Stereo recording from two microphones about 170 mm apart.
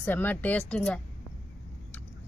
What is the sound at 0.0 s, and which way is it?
Speech, 10° left (ahead or behind).